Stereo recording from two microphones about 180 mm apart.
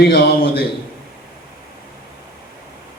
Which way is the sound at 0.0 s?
60° left (ahead or behind).